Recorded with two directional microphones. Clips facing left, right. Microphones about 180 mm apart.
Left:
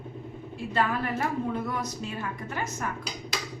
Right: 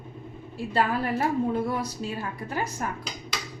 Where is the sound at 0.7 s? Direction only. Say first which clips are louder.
Right 2 dB; 35° right (ahead or behind).